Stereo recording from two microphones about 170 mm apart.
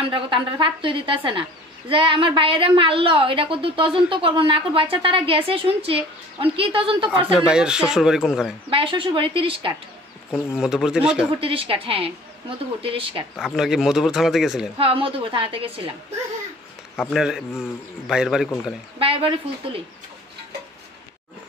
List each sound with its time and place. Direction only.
0.0 s a woman's voice: 30° right (ahead or behind)
7.3 s speech: 5° right (ahead or behind)
8.6 s a woman's voice: 30° right (ahead or behind)
10.6 s speech: 5° right (ahead or behind)
11.3 s a woman's voice: 30° right (ahead or behind)
13.4 s speech: 5° right (ahead or behind)
14.8 s a woman's voice: 35° right (ahead or behind)
17.1 s speech: 5° right (ahead or behind)
18.9 s a woman's voice: 30° right (ahead or behind)